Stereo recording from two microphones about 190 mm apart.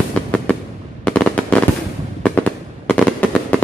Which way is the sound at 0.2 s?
5° left (ahead or behind).